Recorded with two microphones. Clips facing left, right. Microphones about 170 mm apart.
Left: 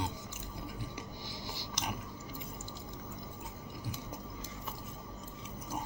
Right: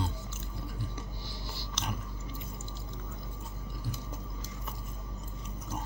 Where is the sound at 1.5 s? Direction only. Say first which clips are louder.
Right 1 dB; 15° left (ahead or behind).